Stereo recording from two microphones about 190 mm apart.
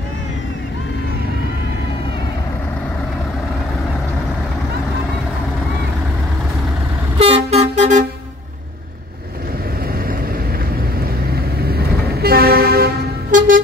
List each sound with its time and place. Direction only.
7.2 s vehicle: 30° right (ahead or behind)
11.7 s toot: 55° right (ahead or behind)